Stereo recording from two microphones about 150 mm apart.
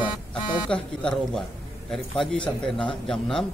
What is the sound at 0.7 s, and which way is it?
A man's voice, 5° left (ahead or behind).